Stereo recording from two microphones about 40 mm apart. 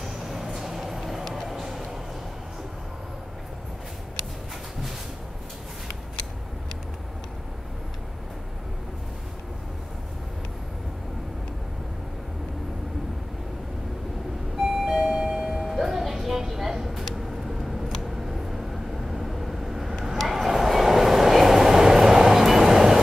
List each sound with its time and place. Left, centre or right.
0.0 s vehicle: centre
1.5 s a sound: centre
14.6 s doorbell: centre
15.7 s music: centre
18.0 s a sound: centre
19.0 s vehicle: centre
20.2 s train: centre